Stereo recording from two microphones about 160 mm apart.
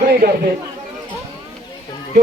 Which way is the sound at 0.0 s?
70° right (ahead or behind).